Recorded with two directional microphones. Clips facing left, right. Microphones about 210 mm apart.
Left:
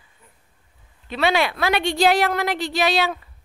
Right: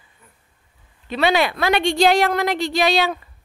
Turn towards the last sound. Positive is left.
turn(degrees=5)  # may be behind; listen again after turning